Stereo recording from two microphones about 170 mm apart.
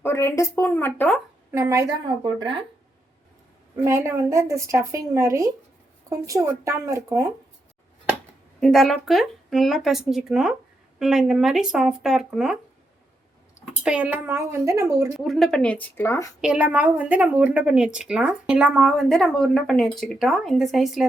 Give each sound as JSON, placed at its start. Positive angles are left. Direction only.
{"t": 0.0, "sound": "speech", "side_deg": 15}
{"t": 1.5, "sound": "speech", "side_deg": -15}
{"t": 3.8, "sound": "speech", "side_deg": -15}
{"t": 8.6, "sound": "speech", "side_deg": 0}
{"t": 13.8, "sound": "speech", "side_deg": -5}
{"t": 15.2, "sound": "speech", "side_deg": 0}
{"t": 16.4, "sound": "speech", "side_deg": -5}